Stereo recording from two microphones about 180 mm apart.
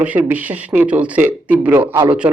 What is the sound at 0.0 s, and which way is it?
Speech, 10° right (ahead or behind).